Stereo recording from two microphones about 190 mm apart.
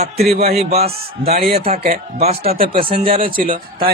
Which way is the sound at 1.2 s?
55° right (ahead or behind).